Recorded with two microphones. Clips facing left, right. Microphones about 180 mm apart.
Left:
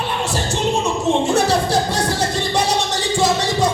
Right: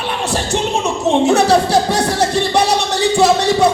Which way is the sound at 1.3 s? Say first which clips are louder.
Right 5 dB; 70° right (ahead or behind).